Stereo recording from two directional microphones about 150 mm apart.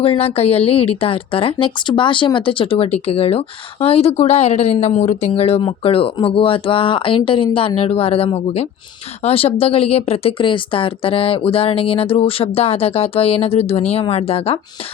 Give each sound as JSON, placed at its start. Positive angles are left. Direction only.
{"t": 0.0, "sound": "a woman's voice", "side_deg": 40}